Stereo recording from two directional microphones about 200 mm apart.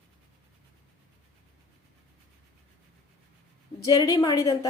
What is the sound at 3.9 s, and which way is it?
Speech, 20° left (ahead or behind).